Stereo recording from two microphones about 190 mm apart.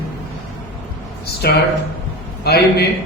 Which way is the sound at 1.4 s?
55° left (ahead or behind).